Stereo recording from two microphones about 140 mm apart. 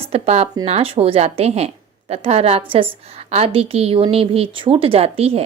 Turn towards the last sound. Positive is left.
turn(degrees=-45)  # may be behind; listen again after turning